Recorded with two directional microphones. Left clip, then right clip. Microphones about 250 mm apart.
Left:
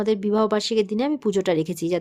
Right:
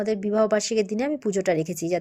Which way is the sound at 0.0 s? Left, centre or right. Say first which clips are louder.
Left 1 dB; centre.